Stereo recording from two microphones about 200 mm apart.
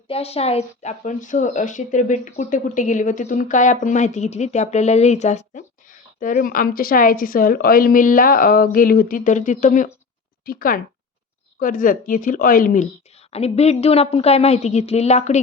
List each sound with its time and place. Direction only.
0.1 s a woman's voice: 30° left (ahead or behind)